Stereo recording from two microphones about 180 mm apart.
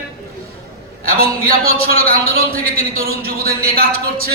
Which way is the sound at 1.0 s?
55° right (ahead or behind).